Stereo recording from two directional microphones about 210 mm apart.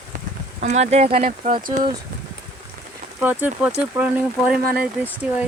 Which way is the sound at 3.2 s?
10° right (ahead or behind).